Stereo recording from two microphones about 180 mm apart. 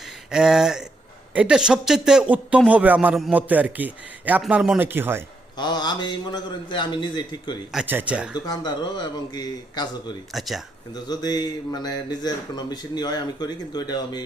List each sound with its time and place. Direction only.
0.3 s a sound: 5° right (ahead or behind)
1.3 s speech: 5° right (ahead or behind)
5.5 s a man's voice: 25° left (ahead or behind)
7.7 s speech: 5° right (ahead or behind)
8.4 s a man's voice: 25° left (ahead or behind)
10.3 s a sound: centre (ahead or behind)
10.9 s a man's voice: 20° left (ahead or behind)